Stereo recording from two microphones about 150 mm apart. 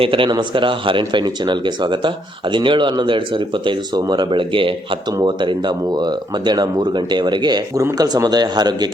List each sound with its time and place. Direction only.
0.0 s speech: 35° right (ahead or behind)